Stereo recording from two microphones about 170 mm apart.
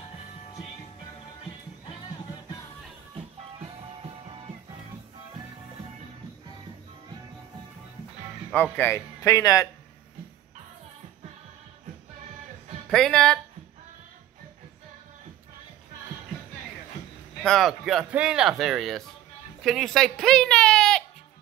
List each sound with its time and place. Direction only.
3.2 s music: 30° right (ahead or behind)
8.7 s speech: 15° left (ahead or behind)
12.9 s speech: 5° left (ahead or behind)
17.4 s speech: centre (ahead or behind)